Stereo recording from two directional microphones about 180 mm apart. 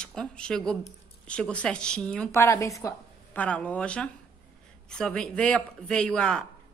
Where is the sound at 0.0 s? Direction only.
5° left (ahead or behind).